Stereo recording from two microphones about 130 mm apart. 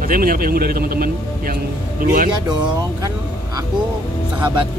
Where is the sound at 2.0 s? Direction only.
90° right.